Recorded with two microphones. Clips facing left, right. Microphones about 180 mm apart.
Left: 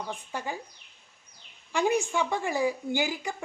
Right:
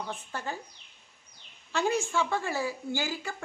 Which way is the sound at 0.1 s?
15° left (ahead or behind).